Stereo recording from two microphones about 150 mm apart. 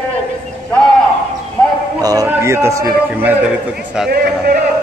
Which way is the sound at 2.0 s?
25° right (ahead or behind).